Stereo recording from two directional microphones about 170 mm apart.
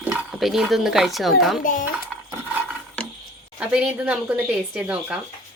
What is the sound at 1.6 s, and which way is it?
Speech, 55° left (ahead or behind).